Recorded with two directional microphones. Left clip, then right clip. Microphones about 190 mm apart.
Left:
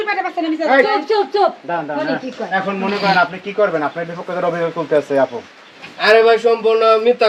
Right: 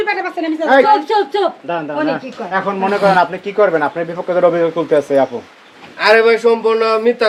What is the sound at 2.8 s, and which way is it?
A man's voice, 30° right (ahead or behind).